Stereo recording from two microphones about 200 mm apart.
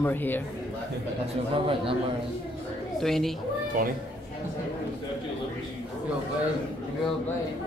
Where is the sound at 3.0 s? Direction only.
Centre (ahead or behind).